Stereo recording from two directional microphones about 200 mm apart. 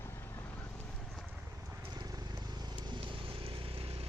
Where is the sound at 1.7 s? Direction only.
15° right (ahead or behind).